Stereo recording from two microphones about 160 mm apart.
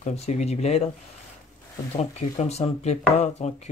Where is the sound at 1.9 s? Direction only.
40° left (ahead or behind).